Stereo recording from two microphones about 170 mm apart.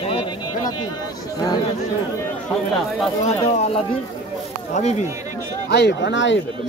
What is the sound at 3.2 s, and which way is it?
Speech, 40° left (ahead or behind).